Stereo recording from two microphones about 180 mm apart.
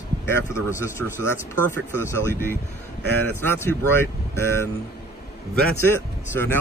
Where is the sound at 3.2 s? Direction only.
10° left (ahead or behind).